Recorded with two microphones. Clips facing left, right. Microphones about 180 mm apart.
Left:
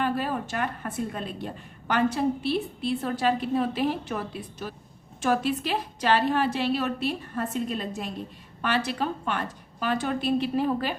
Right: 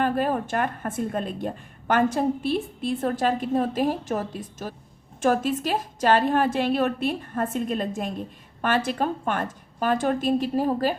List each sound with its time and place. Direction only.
0.0 s speech: 50° right (ahead or behind)